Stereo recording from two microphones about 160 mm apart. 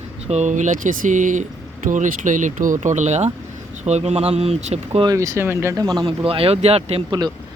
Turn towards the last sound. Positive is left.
turn(degrees=-40)  # may be behind; listen again after turning